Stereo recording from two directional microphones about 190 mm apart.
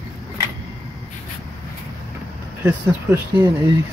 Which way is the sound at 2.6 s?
10° right (ahead or behind).